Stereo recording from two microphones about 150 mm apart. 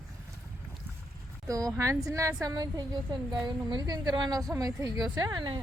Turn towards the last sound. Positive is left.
turn(degrees=-25)  # may be behind; listen again after turning